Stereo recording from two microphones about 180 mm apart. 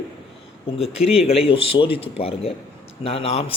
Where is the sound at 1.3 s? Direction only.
30° left (ahead or behind).